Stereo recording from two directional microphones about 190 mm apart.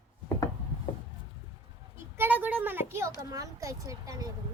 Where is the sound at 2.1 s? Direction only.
10° right (ahead or behind).